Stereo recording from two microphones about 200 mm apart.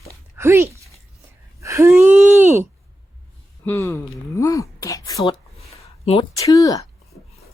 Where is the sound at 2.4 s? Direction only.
10° right (ahead or behind).